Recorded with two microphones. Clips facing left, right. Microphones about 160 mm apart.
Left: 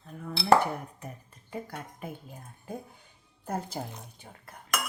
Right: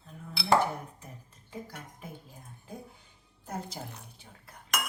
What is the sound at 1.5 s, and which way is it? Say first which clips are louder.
Speech: left 4 dB; 60° left (ahead or behind).